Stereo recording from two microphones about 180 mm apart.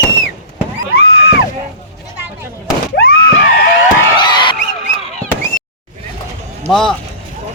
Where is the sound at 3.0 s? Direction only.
60° left (ahead or behind).